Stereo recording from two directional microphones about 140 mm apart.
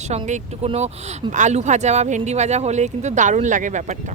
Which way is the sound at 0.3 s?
55° right (ahead or behind).